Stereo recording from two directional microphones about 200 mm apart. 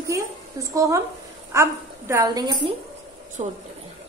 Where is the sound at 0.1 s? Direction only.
15° right (ahead or behind).